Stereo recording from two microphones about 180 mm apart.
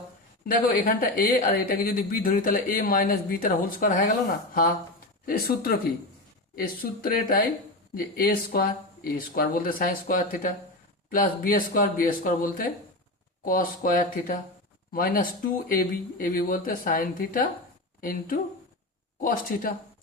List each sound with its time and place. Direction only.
0.4 s speech: 50° left (ahead or behind)